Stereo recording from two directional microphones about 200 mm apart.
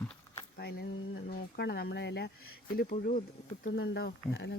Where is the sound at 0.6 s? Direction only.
50° left (ahead or behind).